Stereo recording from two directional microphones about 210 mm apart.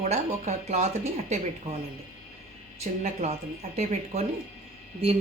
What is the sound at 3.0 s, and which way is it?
Speech, 30° right (ahead or behind).